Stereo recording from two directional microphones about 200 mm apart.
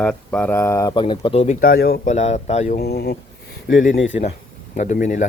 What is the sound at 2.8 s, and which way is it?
Speech, 50° left (ahead or behind).